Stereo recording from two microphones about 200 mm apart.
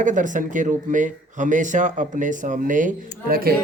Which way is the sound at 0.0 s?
40° right (ahead or behind).